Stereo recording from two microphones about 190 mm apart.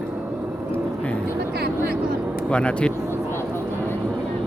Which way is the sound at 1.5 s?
55° right (ahead or behind).